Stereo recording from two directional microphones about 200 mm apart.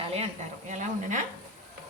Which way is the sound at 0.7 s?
40° right (ahead or behind).